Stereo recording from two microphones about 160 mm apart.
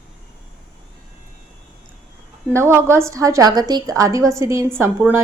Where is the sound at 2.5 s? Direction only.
15° right (ahead or behind).